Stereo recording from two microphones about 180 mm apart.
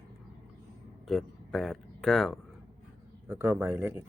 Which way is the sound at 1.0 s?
Centre (ahead or behind).